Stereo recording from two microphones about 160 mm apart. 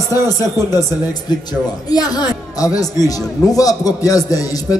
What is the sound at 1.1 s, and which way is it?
A man's voice, 25° left (ahead or behind).